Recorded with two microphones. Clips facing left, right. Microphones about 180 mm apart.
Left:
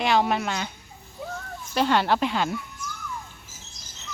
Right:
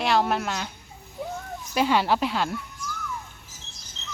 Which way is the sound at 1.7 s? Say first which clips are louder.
Even; 5° right (ahead or behind).